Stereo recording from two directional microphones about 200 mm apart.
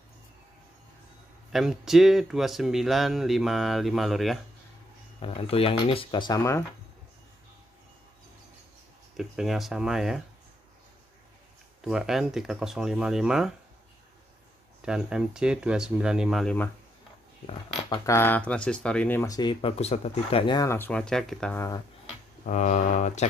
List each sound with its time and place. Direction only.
1.5 s speech: centre (ahead or behind)
5.2 s speech: 30° left (ahead or behind)
9.1 s speech: centre (ahead or behind)
11.8 s speech: centre (ahead or behind)
14.9 s speech: 5° right (ahead or behind)
17.5 s speech: 20° left (ahead or behind); by 21.6 s 5° left (ahead or behind)
22.4 s speech: 35° left (ahead or behind)